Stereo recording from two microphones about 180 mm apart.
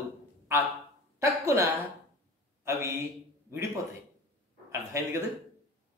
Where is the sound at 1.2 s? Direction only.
15° right (ahead or behind).